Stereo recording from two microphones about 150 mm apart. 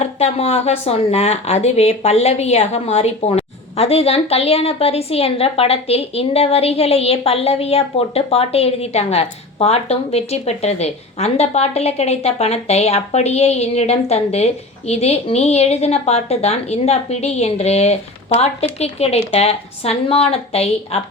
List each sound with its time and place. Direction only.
0.0 s a woman's voice: 45° left (ahead or behind)